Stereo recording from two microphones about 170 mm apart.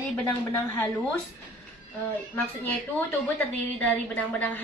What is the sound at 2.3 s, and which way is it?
A woman's voice, 10° left (ahead or behind).